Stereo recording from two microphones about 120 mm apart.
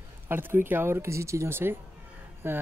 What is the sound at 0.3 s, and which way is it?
Speech, 20° right (ahead or behind).